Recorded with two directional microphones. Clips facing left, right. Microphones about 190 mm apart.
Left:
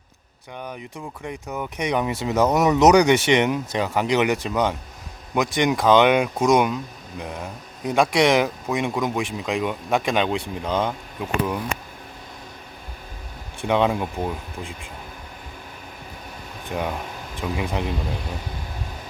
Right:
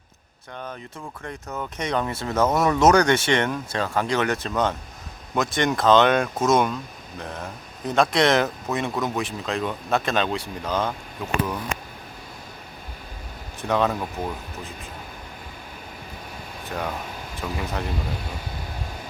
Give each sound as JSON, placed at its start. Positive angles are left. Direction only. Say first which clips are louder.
{"t": 0.5, "sound": "speech", "louder": "left 2 dB", "side_deg": 15}
{"t": 13.7, "sound": "speech", "louder": "left 2 dB", "side_deg": 15}
{"t": 16.7, "sound": "speech", "louder": "left 3 dB", "side_deg": 15}